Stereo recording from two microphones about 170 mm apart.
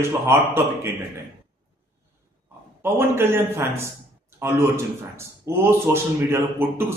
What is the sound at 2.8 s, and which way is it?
Speech, 15° right (ahead or behind).